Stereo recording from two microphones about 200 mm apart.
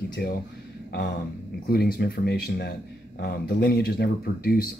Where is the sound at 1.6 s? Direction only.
50° left (ahead or behind).